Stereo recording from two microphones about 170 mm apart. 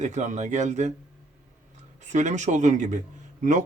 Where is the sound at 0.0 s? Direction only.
45° right (ahead or behind).